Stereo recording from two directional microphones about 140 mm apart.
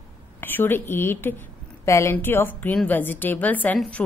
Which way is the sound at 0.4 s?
15° left (ahead or behind).